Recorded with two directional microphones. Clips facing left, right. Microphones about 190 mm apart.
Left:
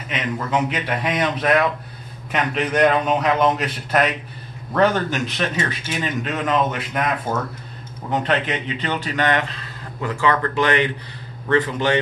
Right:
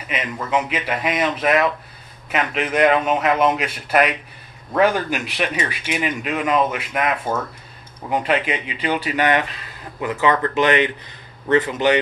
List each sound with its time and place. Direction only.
0.1 s a man's voice: 5° right (ahead or behind)
8.1 s a man's voice: 5° right (ahead or behind)